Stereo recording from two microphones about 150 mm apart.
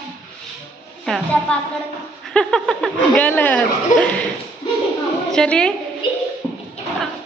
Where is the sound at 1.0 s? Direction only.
5° left (ahead or behind).